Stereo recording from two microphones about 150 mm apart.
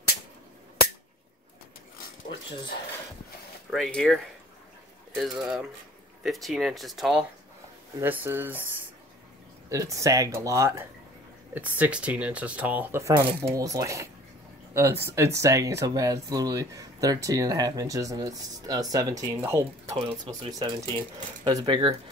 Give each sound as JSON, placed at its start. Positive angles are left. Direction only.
{"t": 3.7, "sound": "speech", "side_deg": 5}
{"t": 8.0, "sound": "speech", "side_deg": -15}
{"t": 9.7, "sound": "speech", "side_deg": -20}